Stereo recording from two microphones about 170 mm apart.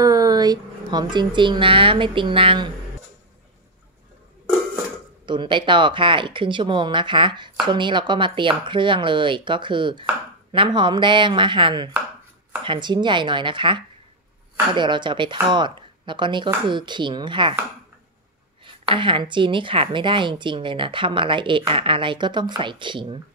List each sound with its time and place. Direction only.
0.0 s speech: 20° right (ahead or behind)
5.2 s speech: 30° right (ahead or behind)
18.6 s speech: 30° right (ahead or behind)